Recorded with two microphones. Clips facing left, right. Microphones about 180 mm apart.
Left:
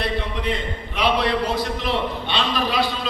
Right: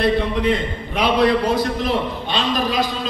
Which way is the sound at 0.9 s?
45° right (ahead or behind).